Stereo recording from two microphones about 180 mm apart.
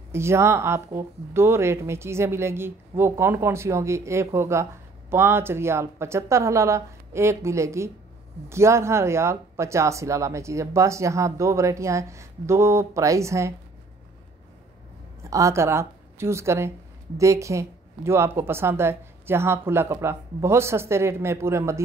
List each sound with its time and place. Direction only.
0.1 s speech: 15° right (ahead or behind)
15.2 s a woman's voice: 15° right (ahead or behind)